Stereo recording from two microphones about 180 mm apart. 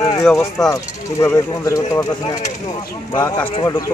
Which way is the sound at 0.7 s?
15° left (ahead or behind).